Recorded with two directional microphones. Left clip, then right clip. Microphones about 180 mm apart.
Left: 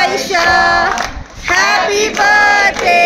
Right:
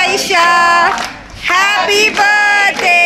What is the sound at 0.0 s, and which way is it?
Music, centre (ahead or behind).